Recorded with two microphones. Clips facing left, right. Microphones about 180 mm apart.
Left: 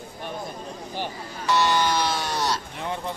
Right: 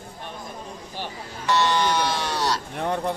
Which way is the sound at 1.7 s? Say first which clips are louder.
Even; 10° left (ahead or behind).